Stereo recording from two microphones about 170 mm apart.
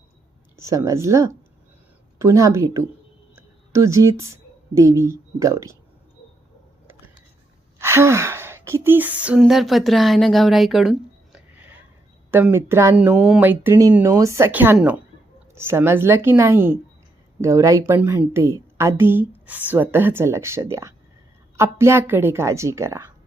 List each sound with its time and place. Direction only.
0.5 s speech: 20° right (ahead or behind)
3.3 s a sound: 15° right (ahead or behind)
4.7 s speech: 20° right (ahead or behind)
7.8 s speech: 15° right (ahead or behind)